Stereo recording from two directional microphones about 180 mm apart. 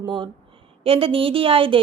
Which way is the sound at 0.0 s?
25° right (ahead or behind).